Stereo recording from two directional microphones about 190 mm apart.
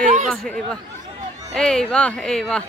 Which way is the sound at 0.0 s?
40° right (ahead or behind).